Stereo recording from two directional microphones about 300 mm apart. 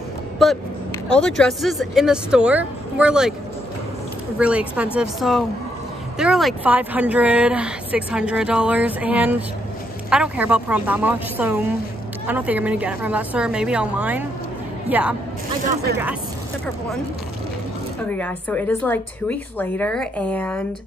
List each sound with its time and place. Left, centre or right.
0.4 s speech: centre
4.4 s speech: centre
15.6 s speech: right
18.1 s speech: centre